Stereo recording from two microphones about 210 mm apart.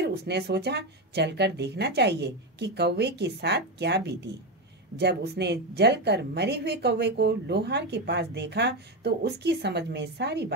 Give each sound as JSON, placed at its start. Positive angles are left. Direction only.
{"t": 0.0, "sound": "a woman's voice", "side_deg": -50}